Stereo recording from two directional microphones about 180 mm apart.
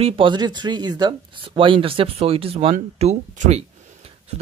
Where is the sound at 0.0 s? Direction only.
30° right (ahead or behind).